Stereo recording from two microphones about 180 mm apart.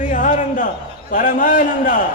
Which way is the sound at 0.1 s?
45° left (ahead or behind).